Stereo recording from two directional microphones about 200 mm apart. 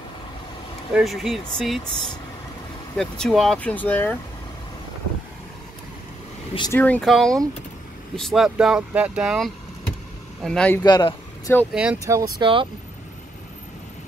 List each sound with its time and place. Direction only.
0.9 s speech: centre (ahead or behind)
6.7 s speech: 5° left (ahead or behind)
10.8 s a man's voice: 20° left (ahead or behind)
11.7 s speech: 5° right (ahead or behind)
12.1 s speech: 20° right (ahead or behind)